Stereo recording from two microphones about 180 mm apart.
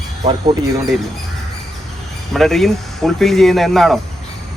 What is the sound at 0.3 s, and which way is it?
Speech, 25° right (ahead or behind).